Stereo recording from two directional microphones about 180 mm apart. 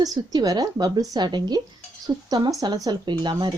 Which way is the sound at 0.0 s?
20° right (ahead or behind).